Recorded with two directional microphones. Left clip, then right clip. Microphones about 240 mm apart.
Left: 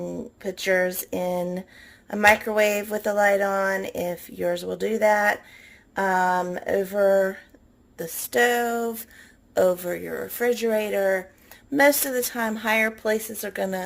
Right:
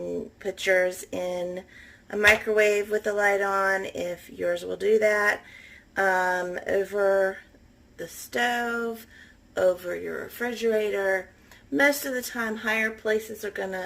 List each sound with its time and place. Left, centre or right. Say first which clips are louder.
0.5 s speech: even; left